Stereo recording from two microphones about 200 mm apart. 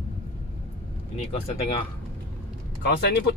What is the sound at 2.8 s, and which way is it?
Speech, 55° left (ahead or behind).